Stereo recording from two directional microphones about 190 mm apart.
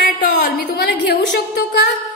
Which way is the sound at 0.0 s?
55° left (ahead or behind).